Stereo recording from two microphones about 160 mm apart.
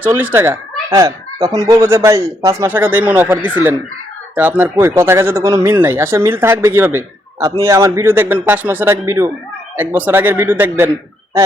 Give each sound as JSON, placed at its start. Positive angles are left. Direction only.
{"t": 0.0, "sound": "speech", "side_deg": -10}
{"t": 4.4, "sound": "speech", "side_deg": -10}